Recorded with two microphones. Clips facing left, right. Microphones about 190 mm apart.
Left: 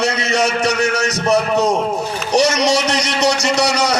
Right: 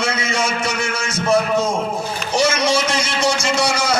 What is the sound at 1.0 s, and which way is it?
A man's voice, 40° left (ahead or behind).